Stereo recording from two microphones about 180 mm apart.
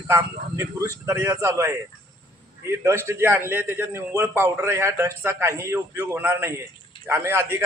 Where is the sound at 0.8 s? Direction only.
15° right (ahead or behind).